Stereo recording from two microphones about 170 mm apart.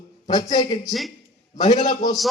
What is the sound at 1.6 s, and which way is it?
Speech, 45° left (ahead or behind).